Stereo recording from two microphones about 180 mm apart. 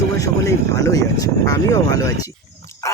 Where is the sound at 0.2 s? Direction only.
20° left (ahead or behind).